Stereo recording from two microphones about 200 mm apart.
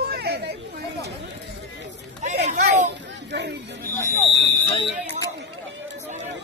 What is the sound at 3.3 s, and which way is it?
Chatter, 60° right (ahead or behind).